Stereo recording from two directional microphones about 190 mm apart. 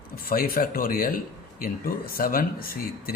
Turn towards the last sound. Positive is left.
turn(degrees=50)  # may be behind; listen again after turning